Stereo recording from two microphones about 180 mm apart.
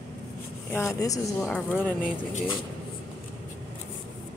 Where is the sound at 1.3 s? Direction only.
Centre (ahead or behind).